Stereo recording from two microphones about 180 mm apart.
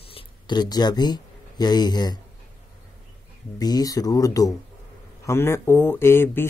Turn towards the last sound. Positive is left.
turn(degrees=15)  # may be behind; listen again after turning